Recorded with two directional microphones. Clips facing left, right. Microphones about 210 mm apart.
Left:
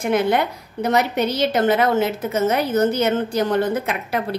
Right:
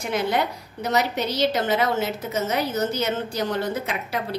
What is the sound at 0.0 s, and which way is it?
A woman's voice, 55° left (ahead or behind).